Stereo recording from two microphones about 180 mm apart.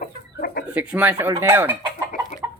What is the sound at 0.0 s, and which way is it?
Chicken, 55° left (ahead or behind).